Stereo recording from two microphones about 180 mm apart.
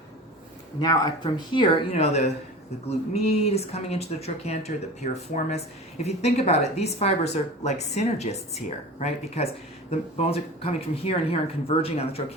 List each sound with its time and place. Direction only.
0.8 s speech: 25° left (ahead or behind)